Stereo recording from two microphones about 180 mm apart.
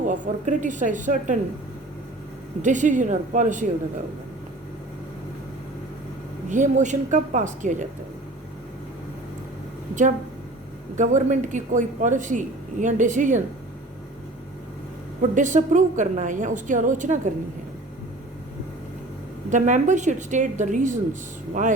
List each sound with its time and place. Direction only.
0.0 s a man's voice: 45° right (ahead or behind)
2.6 s a man's voice: 45° right (ahead or behind)
6.5 s a man's voice: 45° right (ahead or behind)
10.9 s a man's voice: 45° right (ahead or behind)
15.2 s a man's voice: 45° right (ahead or behind)
19.5 s a man's voice: 45° right (ahead or behind)